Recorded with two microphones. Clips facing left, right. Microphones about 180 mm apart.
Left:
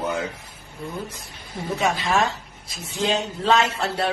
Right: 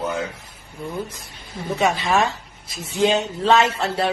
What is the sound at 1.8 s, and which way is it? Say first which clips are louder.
Speech: right 3 dB; centre (ahead or behind).